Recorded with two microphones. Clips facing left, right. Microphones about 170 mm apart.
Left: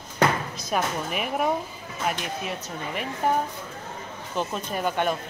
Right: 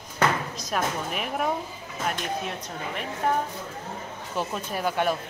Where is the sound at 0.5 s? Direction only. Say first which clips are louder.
Left 1 dB; 5° left (ahead or behind).